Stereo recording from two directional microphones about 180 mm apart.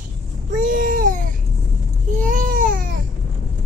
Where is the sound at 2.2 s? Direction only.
50° right (ahead or behind).